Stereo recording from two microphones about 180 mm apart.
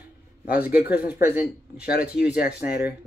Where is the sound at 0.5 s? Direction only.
10° right (ahead or behind).